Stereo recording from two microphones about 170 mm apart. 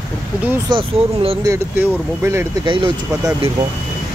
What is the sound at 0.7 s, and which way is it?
Speech, 35° right (ahead or behind).